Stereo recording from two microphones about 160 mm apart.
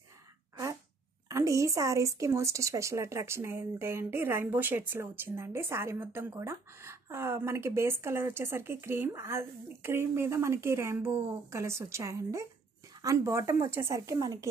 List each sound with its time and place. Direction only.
1.3 s speech: 20° right (ahead or behind)